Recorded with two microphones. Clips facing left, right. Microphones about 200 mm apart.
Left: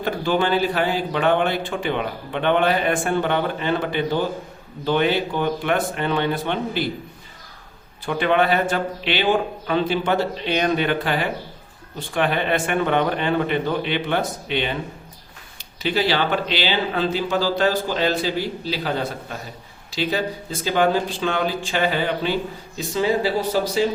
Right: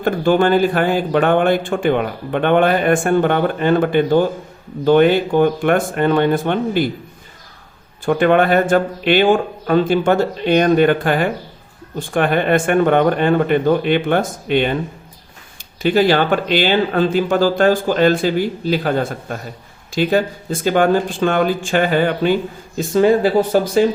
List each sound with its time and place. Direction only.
0.0 s speech: 50° right (ahead or behind)
8.0 s speech: 50° right (ahead or behind)
15.8 s speech: 50° right (ahead or behind)